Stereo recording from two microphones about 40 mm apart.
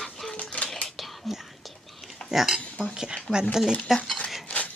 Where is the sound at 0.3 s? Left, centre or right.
Left.